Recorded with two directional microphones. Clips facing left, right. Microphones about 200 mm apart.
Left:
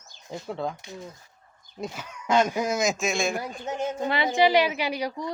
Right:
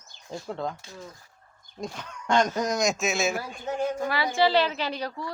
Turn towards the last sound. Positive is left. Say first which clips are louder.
# left 3 dB
turn(degrees=15)  # may be behind; listen again after turning